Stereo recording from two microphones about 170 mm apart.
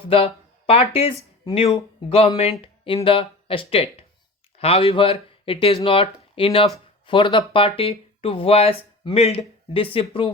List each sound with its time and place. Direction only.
0.0 s speech: 35° left (ahead or behind)